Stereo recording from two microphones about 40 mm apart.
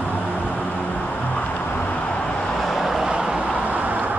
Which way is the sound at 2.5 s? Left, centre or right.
Centre.